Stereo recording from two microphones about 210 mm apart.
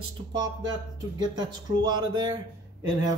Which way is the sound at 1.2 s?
20° right (ahead or behind).